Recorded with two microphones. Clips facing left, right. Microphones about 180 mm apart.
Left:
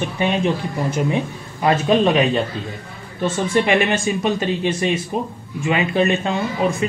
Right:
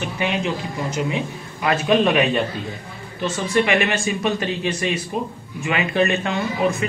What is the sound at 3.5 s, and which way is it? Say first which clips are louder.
Speech: left 1 dB; 30° left (ahead or behind).